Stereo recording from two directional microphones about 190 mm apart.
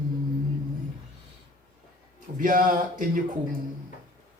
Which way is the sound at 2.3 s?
45° right (ahead or behind).